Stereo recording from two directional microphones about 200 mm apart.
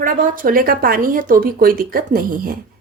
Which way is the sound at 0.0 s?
45° right (ahead or behind).